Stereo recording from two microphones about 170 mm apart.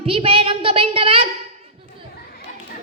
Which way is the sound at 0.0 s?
35° right (ahead or behind).